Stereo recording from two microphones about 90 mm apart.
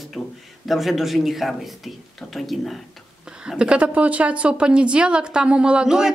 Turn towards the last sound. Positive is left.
turn(degrees=-10)  # may be behind; listen again after turning